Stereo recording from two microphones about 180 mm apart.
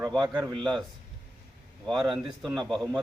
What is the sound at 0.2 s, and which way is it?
Speech, 25° right (ahead or behind).